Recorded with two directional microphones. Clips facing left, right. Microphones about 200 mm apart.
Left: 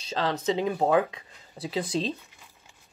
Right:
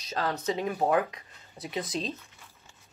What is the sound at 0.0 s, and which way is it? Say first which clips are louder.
A woman's voice: left 3 dB; 30° left (ahead or behind).